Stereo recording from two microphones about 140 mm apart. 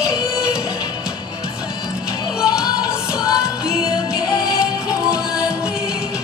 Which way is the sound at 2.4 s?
5° right (ahead or behind).